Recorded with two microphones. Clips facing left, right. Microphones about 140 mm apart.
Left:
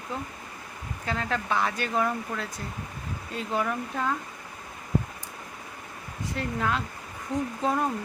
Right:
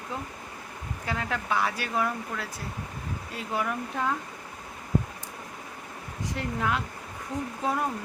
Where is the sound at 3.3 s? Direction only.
5° right (ahead or behind).